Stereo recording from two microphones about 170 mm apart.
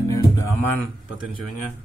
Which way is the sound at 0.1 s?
15° left (ahead or behind).